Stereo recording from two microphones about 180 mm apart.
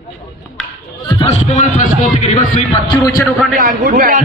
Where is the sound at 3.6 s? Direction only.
50° right (ahead or behind).